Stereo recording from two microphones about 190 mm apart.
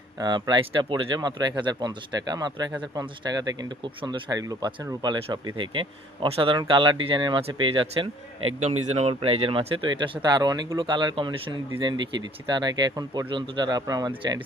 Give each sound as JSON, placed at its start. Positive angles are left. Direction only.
{"t": 0.2, "sound": "speech", "side_deg": -25}